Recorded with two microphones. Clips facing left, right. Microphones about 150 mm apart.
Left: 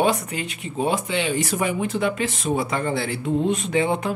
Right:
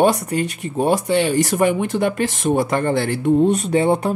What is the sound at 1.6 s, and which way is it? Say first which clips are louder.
Speech: right 6 dB; 60° right (ahead or behind).